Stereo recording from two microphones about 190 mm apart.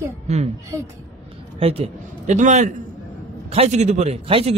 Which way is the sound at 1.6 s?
30° right (ahead or behind).